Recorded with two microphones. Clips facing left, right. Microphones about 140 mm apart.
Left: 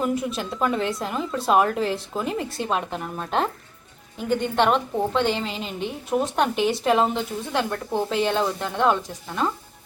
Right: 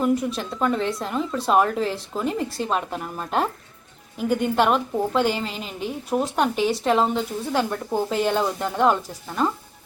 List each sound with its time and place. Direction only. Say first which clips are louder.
0.0 s a woman's voice: right 3 dB; centre (ahead or behind)